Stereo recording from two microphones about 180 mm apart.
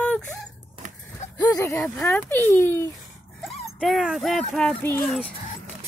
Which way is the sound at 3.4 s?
Centre (ahead or behind).